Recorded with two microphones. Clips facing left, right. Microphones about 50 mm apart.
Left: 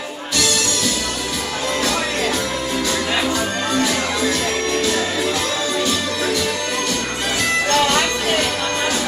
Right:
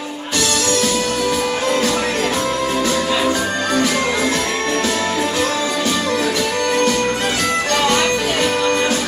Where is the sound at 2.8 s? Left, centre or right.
Right.